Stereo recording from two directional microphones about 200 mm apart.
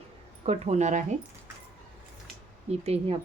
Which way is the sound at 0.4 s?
30° right (ahead or behind).